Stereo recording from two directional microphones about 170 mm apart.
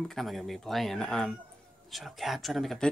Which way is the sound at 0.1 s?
Centre (ahead or behind).